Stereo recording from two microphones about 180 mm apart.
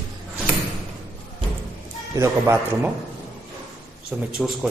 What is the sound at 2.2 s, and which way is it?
Speech, 15° right (ahead or behind).